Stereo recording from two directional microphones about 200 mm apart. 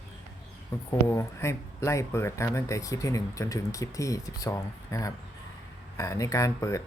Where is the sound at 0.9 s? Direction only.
15° left (ahead or behind).